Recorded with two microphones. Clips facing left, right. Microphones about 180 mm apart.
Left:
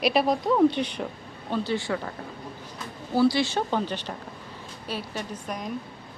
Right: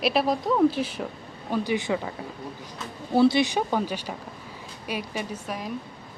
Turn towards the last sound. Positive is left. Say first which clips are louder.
# right 1 dB
turn(degrees=-5)  # may be behind; listen again after turning